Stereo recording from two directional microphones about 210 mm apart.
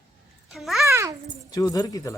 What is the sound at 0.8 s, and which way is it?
Speech, 15° right (ahead or behind).